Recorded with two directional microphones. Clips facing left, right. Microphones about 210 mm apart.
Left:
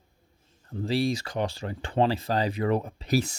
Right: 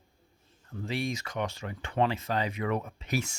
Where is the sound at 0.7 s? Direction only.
35° left (ahead or behind).